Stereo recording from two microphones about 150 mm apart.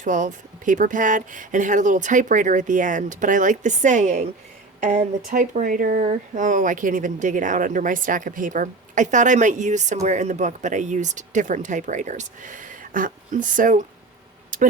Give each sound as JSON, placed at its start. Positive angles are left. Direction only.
{"t": 0.0, "sound": "speech", "side_deg": -55}
{"t": 5.3, "sound": "speech", "side_deg": -65}
{"t": 14.5, "sound": "a sound", "side_deg": -60}